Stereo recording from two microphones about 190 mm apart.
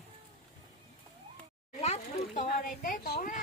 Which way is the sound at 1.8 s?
35° left (ahead or behind).